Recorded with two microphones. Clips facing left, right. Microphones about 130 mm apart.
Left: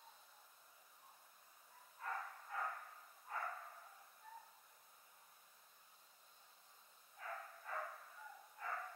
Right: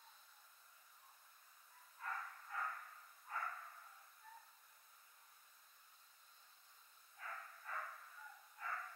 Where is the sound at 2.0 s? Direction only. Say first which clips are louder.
Left 2 dB; 20° left (ahead or behind).